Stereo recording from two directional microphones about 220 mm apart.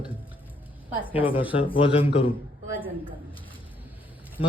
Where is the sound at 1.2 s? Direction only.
25° left (ahead or behind).